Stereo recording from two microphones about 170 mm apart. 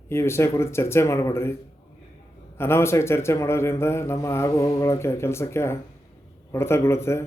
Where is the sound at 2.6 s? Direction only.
15° left (ahead or behind).